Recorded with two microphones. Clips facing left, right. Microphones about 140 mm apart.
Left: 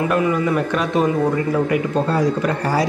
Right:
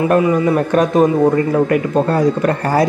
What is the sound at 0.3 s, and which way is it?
Speech, 45° right (ahead or behind).